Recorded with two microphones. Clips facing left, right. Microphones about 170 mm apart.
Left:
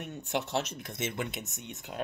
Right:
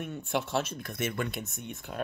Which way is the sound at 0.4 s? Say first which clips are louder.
Right 1 dB; 20° left (ahead or behind).